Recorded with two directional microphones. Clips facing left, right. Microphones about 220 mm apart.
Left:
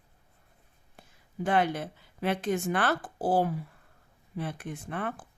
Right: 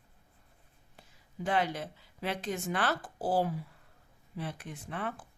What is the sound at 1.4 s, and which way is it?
Speech, 55° left (ahead or behind).